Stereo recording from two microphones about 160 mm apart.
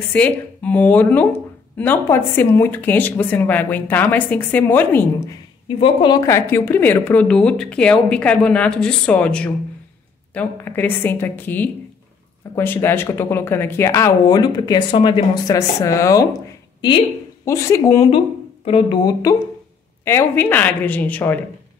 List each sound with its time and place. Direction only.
0.1 s speech: 10° left (ahead or behind)
5.7 s a woman's voice: 30° left (ahead or behind)
6.2 s speech: 15° left (ahead or behind)
17.5 s speech: 20° left (ahead or behind)
18.7 s speech: 30° left (ahead or behind)
20.1 s speech: 15° left (ahead or behind)